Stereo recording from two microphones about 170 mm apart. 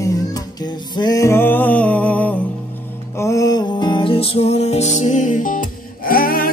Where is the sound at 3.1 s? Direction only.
20° left (ahead or behind).